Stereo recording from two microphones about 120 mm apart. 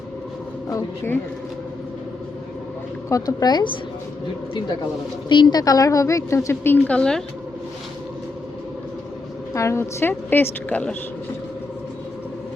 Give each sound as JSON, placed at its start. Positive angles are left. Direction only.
{"t": 3.1, "sound": "speech", "side_deg": 30}
{"t": 5.3, "sound": "a woman's voice", "side_deg": 40}
{"t": 9.6, "sound": "a woman's voice", "side_deg": 25}